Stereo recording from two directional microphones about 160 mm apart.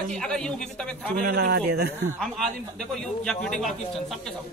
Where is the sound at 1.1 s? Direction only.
70° right (ahead or behind); by 1.9 s 90° right.